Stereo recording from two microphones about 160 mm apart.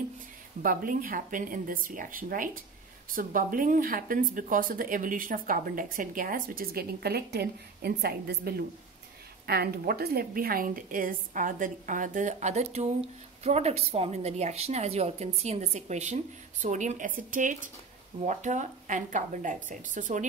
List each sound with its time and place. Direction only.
0.6 s a woman's voice: 60° right (ahead or behind)